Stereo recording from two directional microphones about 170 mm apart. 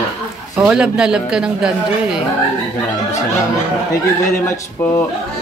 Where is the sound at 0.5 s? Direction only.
5° right (ahead or behind).